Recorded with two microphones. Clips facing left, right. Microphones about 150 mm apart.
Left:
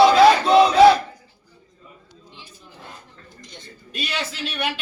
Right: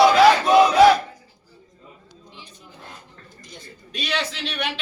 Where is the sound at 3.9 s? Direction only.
10° left (ahead or behind).